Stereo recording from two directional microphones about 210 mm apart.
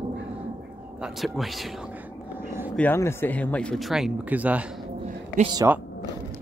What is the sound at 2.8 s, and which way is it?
A man's voice, 10° left (ahead or behind).